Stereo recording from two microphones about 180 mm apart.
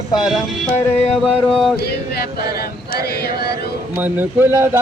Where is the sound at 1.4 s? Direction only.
5° left (ahead or behind).